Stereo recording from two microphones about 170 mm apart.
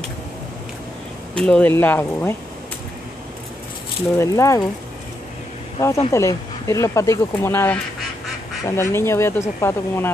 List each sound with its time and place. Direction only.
1.3 s speech: 5° left (ahead or behind)
4.2 s speech: 15° left (ahead or behind)
5.8 s speech: 15° left (ahead or behind)